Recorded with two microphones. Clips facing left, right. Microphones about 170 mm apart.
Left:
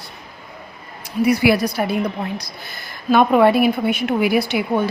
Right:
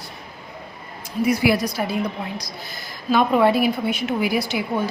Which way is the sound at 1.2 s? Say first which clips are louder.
Left 3 dB; 70° left (ahead or behind).